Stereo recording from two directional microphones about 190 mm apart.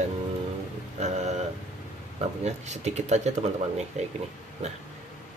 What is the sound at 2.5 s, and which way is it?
Speech, 35° right (ahead or behind).